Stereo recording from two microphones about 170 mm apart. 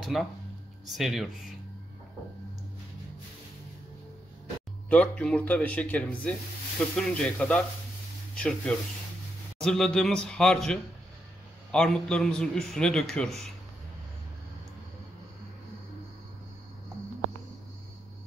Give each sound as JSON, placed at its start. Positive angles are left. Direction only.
{"t": 0.1, "sound": "a man's voice", "side_deg": 0}
{"t": 4.8, "sound": "a man's voice", "side_deg": 10}